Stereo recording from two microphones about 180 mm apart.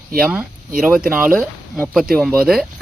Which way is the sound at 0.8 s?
5° right (ahead or behind).